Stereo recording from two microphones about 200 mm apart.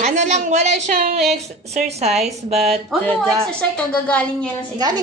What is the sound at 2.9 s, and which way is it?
Speech, centre (ahead or behind).